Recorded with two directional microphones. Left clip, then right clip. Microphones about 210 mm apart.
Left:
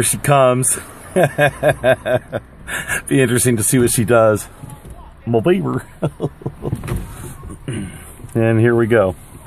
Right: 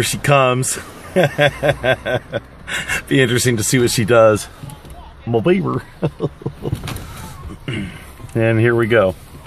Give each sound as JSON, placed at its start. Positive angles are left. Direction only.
{"t": 0.0, "sound": "speech", "side_deg": 15}